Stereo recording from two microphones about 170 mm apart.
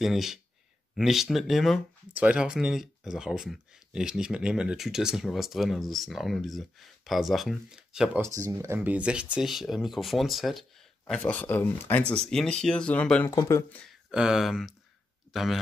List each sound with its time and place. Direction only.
0.0 s speech: centre (ahead or behind)
8.2 s speech: 20° right (ahead or behind); by 13.3 s 5° left (ahead or behind)
13.3 s speech: 15° left (ahead or behind)
14.1 s speech: 5° right (ahead or behind)